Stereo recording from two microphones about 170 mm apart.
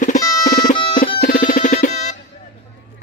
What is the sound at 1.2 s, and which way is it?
Music, 55° left (ahead or behind).